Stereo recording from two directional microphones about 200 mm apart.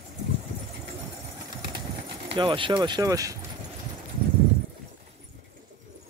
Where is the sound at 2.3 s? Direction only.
25° right (ahead or behind).